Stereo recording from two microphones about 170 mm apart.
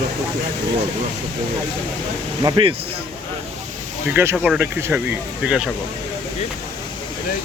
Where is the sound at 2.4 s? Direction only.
30° right (ahead or behind).